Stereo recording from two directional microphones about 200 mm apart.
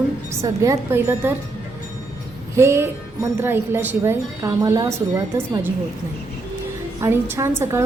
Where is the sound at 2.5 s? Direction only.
15° right (ahead or behind).